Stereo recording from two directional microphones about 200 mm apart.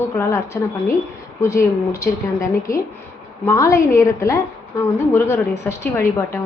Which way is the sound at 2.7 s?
45° left (ahead or behind).